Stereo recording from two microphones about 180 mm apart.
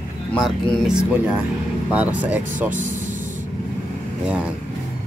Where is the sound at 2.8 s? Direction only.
45° right (ahead or behind).